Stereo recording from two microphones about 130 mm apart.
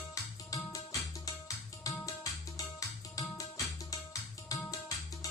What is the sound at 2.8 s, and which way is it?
Music, 25° left (ahead or behind).